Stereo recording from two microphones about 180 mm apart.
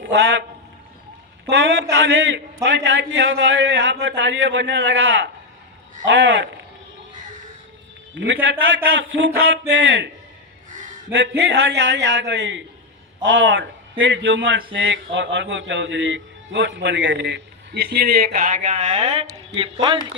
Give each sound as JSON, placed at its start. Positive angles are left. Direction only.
{"t": 0.0, "sound": "a man's voice", "side_deg": -90}
{"t": 1.5, "sound": "a man's voice", "side_deg": -85}
{"t": 8.1, "sound": "a man's voice", "side_deg": -90}
{"t": 11.1, "sound": "a man's voice", "side_deg": -85}